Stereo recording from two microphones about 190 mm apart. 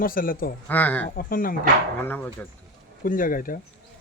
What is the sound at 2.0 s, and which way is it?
Speech, 10° left (ahead or behind).